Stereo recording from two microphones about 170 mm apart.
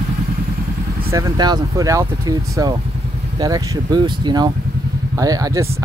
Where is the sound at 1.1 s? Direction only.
20° right (ahead or behind).